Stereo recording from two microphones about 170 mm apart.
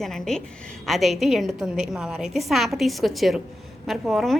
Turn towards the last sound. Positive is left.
turn(degrees=0)  # may be behind; listen again after turning